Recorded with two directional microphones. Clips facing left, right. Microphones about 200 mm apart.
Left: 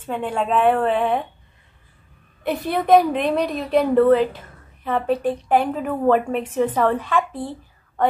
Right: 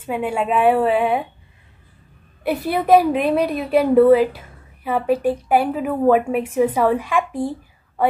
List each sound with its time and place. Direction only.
0.0 s a woman's voice: 10° right (ahead or behind)
2.4 s a woman's voice: 5° right (ahead or behind)